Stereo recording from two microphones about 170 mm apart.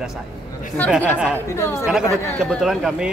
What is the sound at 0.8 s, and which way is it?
A woman's voice, 10° left (ahead or behind).